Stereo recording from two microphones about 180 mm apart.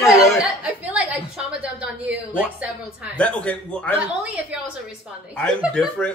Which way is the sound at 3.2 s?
5° left (ahead or behind).